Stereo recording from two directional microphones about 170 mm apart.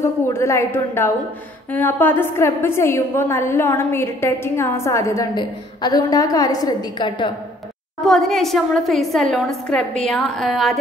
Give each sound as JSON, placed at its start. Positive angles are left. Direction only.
{"t": 0.0, "sound": "a woman's voice", "side_deg": 15}
{"t": 8.0, "sound": "a woman's voice", "side_deg": 0}